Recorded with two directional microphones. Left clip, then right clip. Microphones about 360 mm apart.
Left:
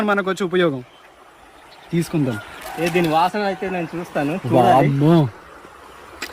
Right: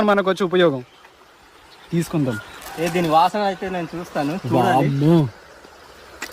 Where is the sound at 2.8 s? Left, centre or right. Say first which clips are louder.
Right 1 dB; centre.